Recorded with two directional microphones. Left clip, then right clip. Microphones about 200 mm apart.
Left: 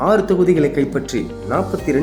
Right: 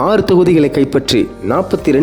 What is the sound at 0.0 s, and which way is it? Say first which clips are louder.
A man's voice: right 4 dB; 40° right (ahead or behind).